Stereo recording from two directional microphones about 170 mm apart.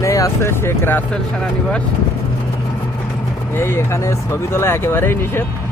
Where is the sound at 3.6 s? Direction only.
15° left (ahead or behind).